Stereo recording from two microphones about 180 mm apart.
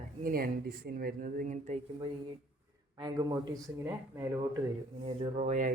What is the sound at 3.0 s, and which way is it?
Speech, 20° right (ahead or behind).